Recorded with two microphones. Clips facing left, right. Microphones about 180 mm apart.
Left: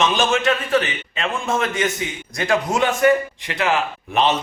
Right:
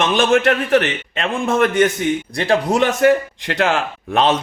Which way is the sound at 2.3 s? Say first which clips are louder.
Even; 30° right (ahead or behind).